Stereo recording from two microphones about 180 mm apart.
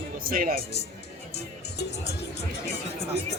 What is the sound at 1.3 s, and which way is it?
Speech, 65° left (ahead or behind).